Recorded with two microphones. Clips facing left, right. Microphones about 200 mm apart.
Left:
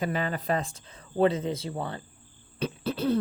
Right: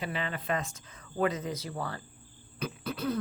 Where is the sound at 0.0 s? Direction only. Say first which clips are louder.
Left 6 dB; 45° left (ahead or behind).